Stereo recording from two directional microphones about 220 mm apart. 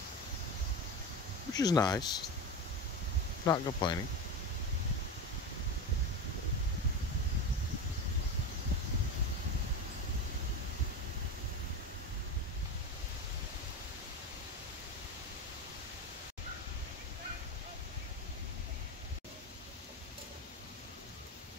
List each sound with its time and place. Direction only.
1.5 s speech: 15° left (ahead or behind)
3.4 s speech: 15° left (ahead or behind)